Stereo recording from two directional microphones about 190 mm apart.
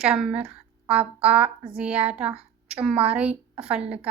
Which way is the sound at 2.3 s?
30° right (ahead or behind).